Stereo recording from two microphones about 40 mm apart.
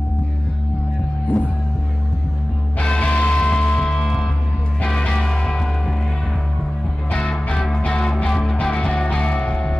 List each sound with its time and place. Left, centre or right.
1.3 s speech: left
2.8 s music: left
7.1 s music: left
8.6 s music: left